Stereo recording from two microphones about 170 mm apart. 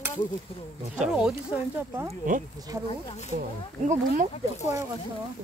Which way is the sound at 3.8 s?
45° right (ahead or behind).